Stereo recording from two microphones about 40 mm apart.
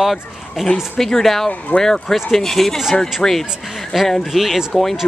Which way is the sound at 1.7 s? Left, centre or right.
Left.